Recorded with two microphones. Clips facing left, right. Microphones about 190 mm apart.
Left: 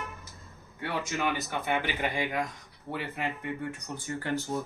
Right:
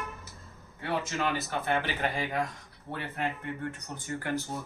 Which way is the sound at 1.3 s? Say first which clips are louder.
Right 1 dB; 10° left (ahead or behind).